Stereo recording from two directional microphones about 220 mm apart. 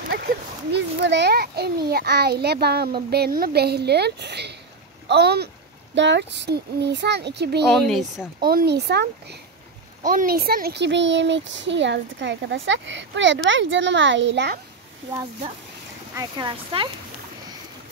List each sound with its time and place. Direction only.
0.1 s a child's voice: 45° right (ahead or behind)
7.6 s speech: 5° left (ahead or behind)
8.4 s a child's voice: 40° right (ahead or behind)
16.2 s speech: 20° right (ahead or behind)